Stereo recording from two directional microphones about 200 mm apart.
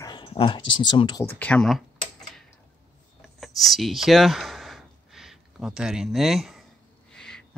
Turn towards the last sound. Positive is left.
turn(degrees=5)  # may be behind; listen again after turning